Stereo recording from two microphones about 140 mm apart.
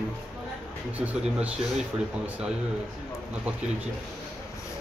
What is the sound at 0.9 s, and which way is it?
Speech, 10° right (ahead or behind).